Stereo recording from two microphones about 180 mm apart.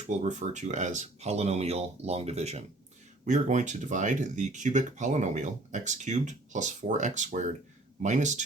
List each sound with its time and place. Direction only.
0.1 s speech: 40° right (ahead or behind)